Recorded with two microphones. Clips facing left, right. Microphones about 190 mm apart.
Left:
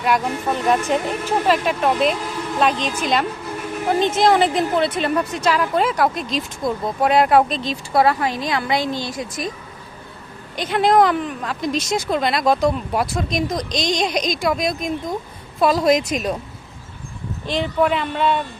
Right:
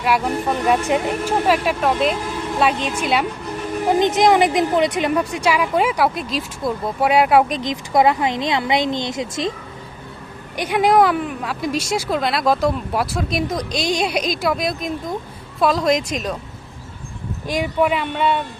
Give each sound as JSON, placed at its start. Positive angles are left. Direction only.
{"t": 0.0, "sound": "a woman's voice", "side_deg": -5}
{"t": 10.6, "sound": "a woman's voice", "side_deg": -10}
{"t": 17.4, "sound": "a woman's voice", "side_deg": -10}